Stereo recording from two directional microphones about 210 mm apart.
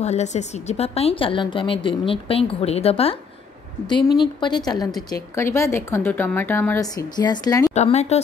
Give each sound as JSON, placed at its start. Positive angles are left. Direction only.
{"t": 0.0, "sound": "a woman's voice", "side_deg": 35}
{"t": 4.2, "sound": "a woman's voice", "side_deg": 20}
{"t": 7.7, "sound": "speech", "side_deg": 30}